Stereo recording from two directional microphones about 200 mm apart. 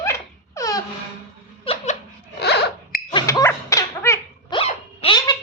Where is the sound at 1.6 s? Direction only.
30° left (ahead or behind).